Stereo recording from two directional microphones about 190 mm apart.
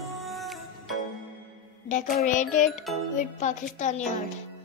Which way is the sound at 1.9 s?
40° left (ahead or behind).